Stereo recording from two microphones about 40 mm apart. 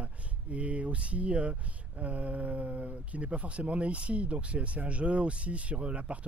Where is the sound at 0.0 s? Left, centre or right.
Right.